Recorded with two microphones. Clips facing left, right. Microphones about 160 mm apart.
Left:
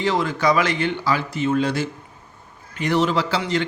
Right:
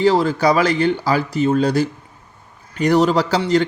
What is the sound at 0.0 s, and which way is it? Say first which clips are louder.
A man's voice: right 6 dB; 35° right (ahead or behind).